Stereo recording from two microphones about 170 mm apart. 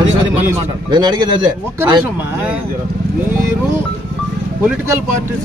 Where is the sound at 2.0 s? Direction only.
10° right (ahead or behind).